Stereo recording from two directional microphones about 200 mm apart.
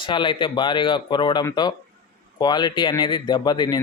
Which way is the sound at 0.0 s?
25° left (ahead or behind).